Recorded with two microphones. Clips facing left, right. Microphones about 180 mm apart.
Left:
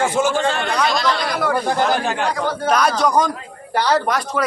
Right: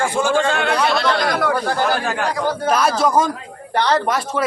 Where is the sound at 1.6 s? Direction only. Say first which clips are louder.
Left 1 dB; 20° left (ahead or behind).